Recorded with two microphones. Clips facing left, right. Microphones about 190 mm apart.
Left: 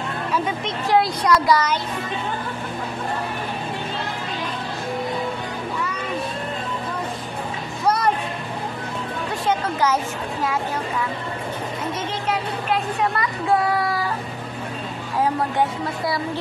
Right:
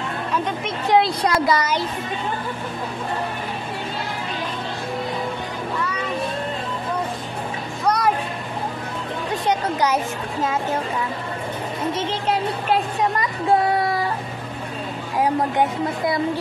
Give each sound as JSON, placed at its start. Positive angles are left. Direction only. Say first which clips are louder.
{"t": 0.3, "sound": "speech", "louder": "left 1 dB", "side_deg": 5}
{"t": 0.8, "sound": "speech", "louder": "right 1 dB", "side_deg": -25}
{"t": 7.8, "sound": "music", "louder": "even", "side_deg": 5}
{"t": 9.5, "sound": "speech", "louder": "even", "side_deg": -15}
{"t": 13.2, "sound": "a sound", "louder": "right 3 dB", "side_deg": -25}